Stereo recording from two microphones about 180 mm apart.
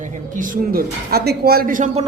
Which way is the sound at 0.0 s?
45° right (ahead or behind).